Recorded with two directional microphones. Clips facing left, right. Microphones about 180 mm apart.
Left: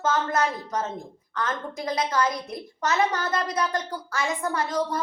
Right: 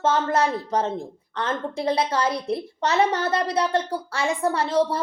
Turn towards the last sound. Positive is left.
turn(degrees=-30)  # may be behind; listen again after turning